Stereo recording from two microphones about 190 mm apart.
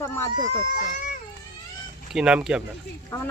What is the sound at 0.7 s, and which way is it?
Speech, 45° left (ahead or behind).